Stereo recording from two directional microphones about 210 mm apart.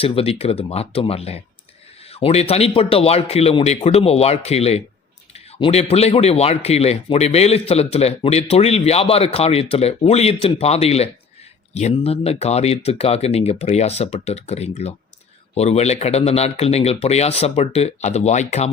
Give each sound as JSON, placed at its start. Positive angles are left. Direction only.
{"t": 0.0, "sound": "speech", "side_deg": 30}